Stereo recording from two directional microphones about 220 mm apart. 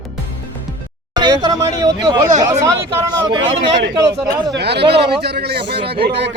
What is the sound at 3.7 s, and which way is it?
A man's voice, 50° right (ahead or behind).